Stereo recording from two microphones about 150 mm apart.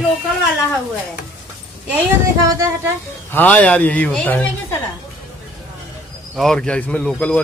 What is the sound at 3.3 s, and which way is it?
Speech, 10° left (ahead or behind).